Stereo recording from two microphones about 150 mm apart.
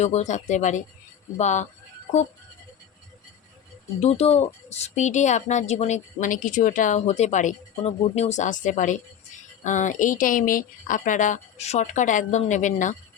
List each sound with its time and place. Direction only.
0.0 s speech: 50° left (ahead or behind)
4.0 s speech: 45° left (ahead or behind)